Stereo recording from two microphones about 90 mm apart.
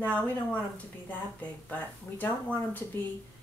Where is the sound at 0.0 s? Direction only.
15° left (ahead or behind).